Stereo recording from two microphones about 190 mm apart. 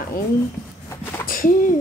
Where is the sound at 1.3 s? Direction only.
45° left (ahead or behind).